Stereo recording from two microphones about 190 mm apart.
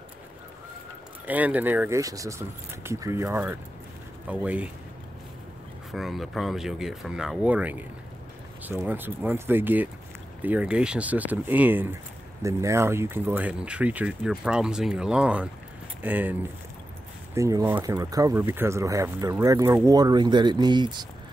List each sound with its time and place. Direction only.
1.2 s speech: 10° right (ahead or behind)
5.9 s speech: centre (ahead or behind); by 21.1 s 25° right (ahead or behind)